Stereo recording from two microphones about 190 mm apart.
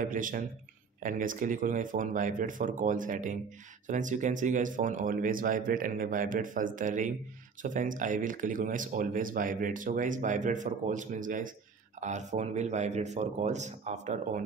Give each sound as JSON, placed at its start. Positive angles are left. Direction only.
{"t": 0.0, "sound": "speech", "side_deg": -45}